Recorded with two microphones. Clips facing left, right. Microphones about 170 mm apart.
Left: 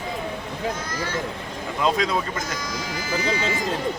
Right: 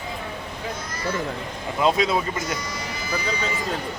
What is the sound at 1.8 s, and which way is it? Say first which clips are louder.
Speech: right 2 dB; 10° right (ahead or behind).